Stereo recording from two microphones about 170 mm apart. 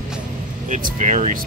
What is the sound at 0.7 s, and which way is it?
Speech, 50° right (ahead or behind).